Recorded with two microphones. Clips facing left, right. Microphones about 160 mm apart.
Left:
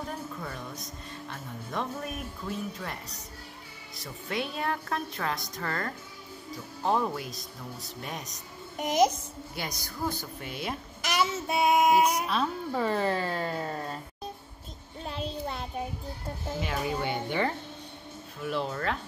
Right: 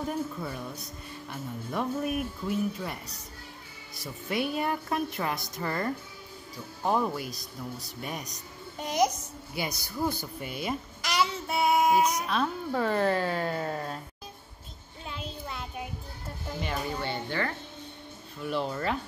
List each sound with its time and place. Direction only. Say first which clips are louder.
0.4 s speech: right 2 dB; 10° right (ahead or behind)
4.0 s speech: right 3 dB; 5° right (ahead or behind)
8.7 s a child's voice: left 2 dB; 20° left (ahead or behind)
10.0 s speech: right 1 dB; centre (ahead or behind)
11.1 s child singing: even; 15° left (ahead or behind)
11.9 s speech: left 1 dB; 5° left (ahead or behind)
15.0 s a sound: left 5 dB; 35° left (ahead or behind)
16.5 s speech: left 1 dB; centre (ahead or behind)
16.9 s child singing: left 2 dB; 15° left (ahead or behind)
18.4 s speech: right 1 dB; centre (ahead or behind)